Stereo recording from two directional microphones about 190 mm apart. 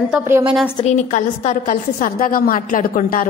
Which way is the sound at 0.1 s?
10° right (ahead or behind).